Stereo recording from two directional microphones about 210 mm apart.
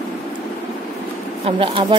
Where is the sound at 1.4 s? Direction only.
25° right (ahead or behind).